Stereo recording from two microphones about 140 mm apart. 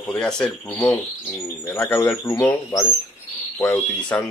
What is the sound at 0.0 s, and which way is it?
Speech, 5° left (ahead or behind).